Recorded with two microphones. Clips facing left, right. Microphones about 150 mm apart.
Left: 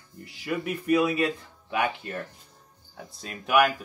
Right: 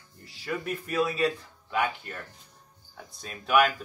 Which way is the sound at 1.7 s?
25° left (ahead or behind).